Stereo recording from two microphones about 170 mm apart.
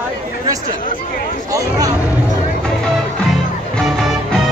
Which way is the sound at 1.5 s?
20° right (ahead or behind).